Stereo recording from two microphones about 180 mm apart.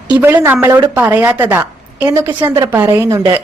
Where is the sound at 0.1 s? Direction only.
10° right (ahead or behind).